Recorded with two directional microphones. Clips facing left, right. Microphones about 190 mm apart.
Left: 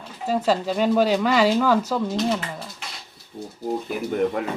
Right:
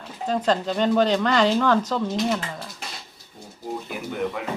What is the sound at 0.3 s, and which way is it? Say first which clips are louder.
Speech: left 1 dB; 5° left (ahead or behind).